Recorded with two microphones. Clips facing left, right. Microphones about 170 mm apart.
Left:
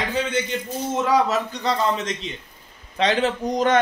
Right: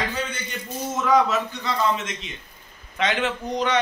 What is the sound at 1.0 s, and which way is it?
A man's voice, 35° left (ahead or behind).